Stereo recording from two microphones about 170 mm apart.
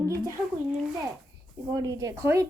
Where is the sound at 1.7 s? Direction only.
20° right (ahead or behind).